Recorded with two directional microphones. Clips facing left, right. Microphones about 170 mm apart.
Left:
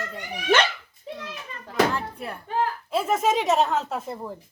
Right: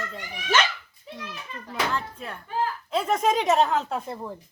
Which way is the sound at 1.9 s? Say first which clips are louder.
Left 1 dB; 10° left (ahead or behind).